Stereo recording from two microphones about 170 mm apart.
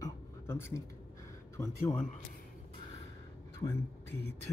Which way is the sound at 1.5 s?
20° left (ahead or behind).